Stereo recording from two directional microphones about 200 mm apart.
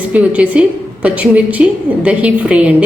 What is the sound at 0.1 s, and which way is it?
A woman's voice, 5° right (ahead or behind).